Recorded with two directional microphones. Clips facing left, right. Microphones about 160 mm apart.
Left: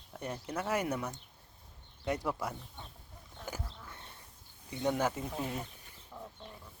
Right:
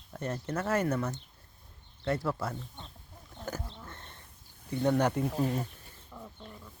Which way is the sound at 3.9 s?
10° left (ahead or behind).